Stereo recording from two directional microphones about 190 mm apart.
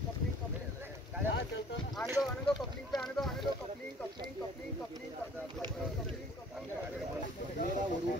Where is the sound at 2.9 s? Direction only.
Centre (ahead or behind).